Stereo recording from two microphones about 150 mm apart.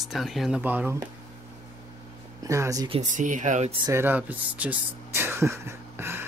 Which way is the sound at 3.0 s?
55° right (ahead or behind).